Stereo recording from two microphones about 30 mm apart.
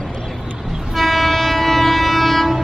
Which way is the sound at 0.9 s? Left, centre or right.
Centre.